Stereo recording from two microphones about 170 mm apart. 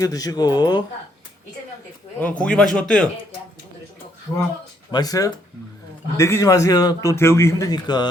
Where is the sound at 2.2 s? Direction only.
5° left (ahead or behind).